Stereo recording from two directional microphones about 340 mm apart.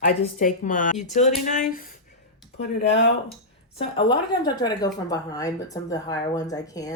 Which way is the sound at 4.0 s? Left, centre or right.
Centre.